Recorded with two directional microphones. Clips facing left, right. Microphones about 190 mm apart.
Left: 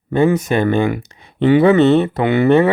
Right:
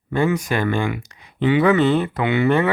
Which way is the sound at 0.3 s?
25° left (ahead or behind).